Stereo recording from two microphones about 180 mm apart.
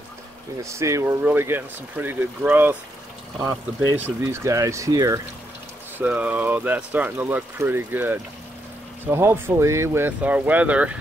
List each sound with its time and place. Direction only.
0.6 s speech: 15° right (ahead or behind)
3.9 s speech: 10° right (ahead or behind)
5.9 s speech: 5° right (ahead or behind)